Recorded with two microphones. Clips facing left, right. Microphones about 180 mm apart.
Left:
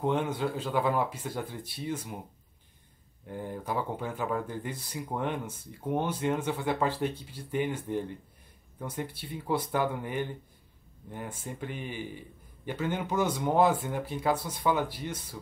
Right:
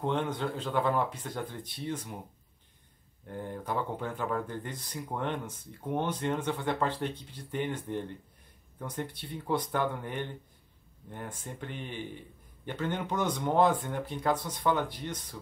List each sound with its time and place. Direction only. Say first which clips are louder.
0.0 s speech: left 2 dB; 5° left (ahead or behind)
3.3 s speech: left 1 dB; 5° left (ahead or behind)